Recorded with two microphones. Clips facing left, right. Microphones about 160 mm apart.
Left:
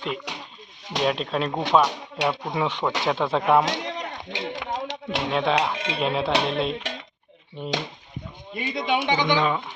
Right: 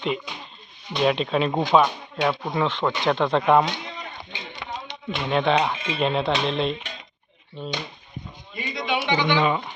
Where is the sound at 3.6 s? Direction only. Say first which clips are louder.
Left 3 dB; 90° left.